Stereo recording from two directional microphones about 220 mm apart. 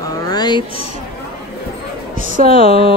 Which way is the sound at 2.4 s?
25° left (ahead or behind).